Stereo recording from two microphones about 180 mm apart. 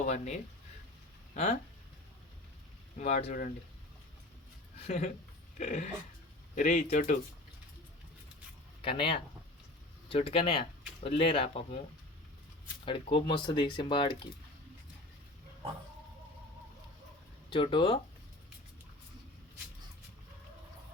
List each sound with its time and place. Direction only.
0.0 s speech: 40° left (ahead or behind)
3.0 s speech: 35° left (ahead or behind)
4.8 s a woman's voice: 35° left (ahead or behind)
8.8 s speech: 30° left (ahead or behind)
12.8 s speech: 30° left (ahead or behind)
17.5 s speech: 25° left (ahead or behind)